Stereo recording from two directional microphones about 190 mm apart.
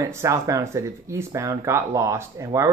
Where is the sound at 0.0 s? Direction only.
15° right (ahead or behind).